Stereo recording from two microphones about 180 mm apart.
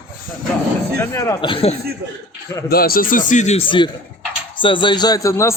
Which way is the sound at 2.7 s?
55° left (ahead or behind).